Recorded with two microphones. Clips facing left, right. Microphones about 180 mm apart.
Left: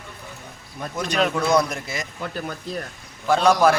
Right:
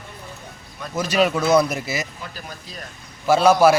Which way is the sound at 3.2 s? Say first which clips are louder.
Right 3 dB; 10° right (ahead or behind).